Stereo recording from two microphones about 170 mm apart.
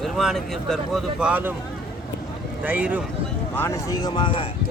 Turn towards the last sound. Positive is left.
turn(degrees=30)  # may be behind; listen again after turning